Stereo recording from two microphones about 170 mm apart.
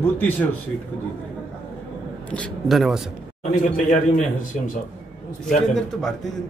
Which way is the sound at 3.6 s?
50° left (ahead or behind).